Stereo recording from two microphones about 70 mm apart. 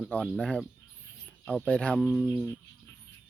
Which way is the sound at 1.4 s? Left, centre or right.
Centre.